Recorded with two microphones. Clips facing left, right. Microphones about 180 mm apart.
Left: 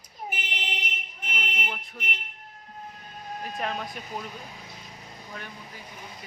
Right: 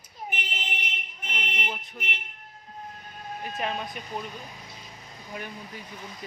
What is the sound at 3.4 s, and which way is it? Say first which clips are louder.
Speech: right 1 dB; centre (ahead or behind).